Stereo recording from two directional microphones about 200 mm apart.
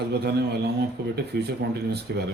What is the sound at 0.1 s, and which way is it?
Speech, 55° right (ahead or behind).